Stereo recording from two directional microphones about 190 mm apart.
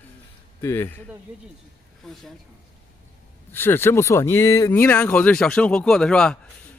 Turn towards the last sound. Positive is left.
turn(degrees=5)  # may be behind; listen again after turning